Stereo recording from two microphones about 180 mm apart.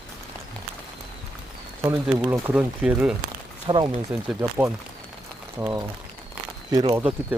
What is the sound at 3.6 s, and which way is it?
Speech, 25° right (ahead or behind).